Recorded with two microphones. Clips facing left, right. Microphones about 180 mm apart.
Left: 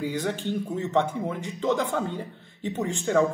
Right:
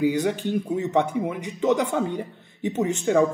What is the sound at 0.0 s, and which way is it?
Speech, 15° right (ahead or behind).